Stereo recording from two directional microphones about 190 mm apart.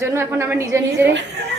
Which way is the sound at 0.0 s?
15° right (ahead or behind).